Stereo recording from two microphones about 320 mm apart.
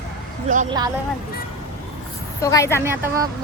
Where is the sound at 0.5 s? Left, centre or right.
Centre.